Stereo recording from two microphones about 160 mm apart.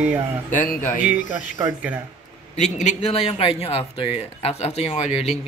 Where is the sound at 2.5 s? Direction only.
45° left (ahead or behind).